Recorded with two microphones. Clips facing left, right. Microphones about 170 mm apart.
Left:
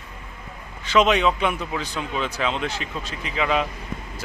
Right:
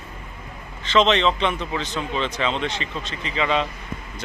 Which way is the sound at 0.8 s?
10° left (ahead or behind).